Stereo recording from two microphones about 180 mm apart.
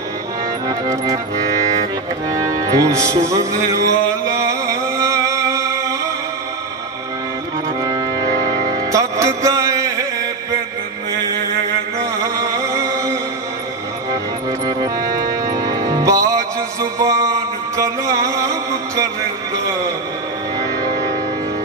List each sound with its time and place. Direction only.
0.7 s music: 20° right (ahead or behind)
2.3 s music: 20° right (ahead or behind)
7.8 s music: 20° right (ahead or behind)
12.0 s music: 20° right (ahead or behind)
14.7 s music: 20° right (ahead or behind)
17.0 s mantra: 20° right (ahead or behind)
17.7 s music: 15° right (ahead or behind)
19.5 s a sound: 20° right (ahead or behind)